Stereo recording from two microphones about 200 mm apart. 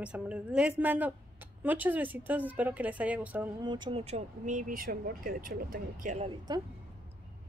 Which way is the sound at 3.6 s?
25° right (ahead or behind).